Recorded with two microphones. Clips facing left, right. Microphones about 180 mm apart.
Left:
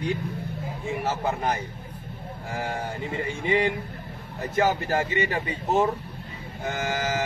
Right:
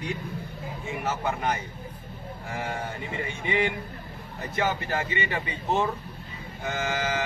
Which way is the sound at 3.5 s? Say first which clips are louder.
Left 3 dB; 35° left (ahead or behind).